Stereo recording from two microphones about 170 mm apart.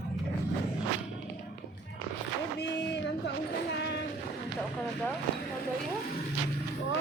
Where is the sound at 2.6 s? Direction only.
90° left.